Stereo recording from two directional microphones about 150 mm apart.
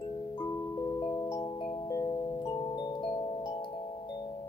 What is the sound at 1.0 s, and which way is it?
Music, 20° left (ahead or behind).